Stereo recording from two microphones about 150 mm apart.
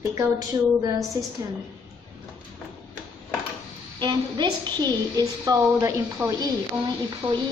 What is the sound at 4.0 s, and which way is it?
A woman's voice, 30° right (ahead or behind).